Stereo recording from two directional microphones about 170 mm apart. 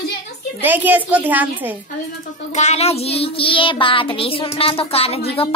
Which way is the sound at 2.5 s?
40° left (ahead or behind).